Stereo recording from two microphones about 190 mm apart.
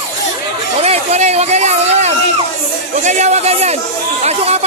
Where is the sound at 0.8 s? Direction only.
35° right (ahead or behind).